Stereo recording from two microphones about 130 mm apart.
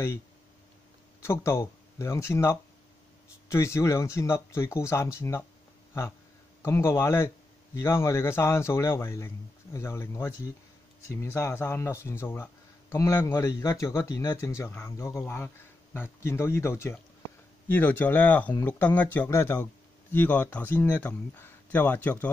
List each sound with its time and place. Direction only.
1.2 s speech: 20° left (ahead or behind)
6.6 s speech: 20° left (ahead or behind)